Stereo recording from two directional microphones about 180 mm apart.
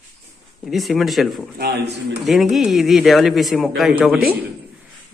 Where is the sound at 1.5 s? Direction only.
65° right (ahead or behind).